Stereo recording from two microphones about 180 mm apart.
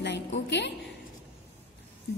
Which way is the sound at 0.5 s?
75° left (ahead or behind).